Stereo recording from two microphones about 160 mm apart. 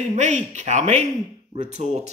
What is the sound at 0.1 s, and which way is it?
A man's voice, 45° right (ahead or behind).